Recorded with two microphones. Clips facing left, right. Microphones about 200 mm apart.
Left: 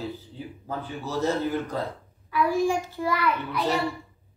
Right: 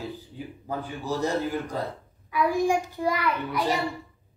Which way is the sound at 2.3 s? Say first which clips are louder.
Even; 15° right (ahead or behind).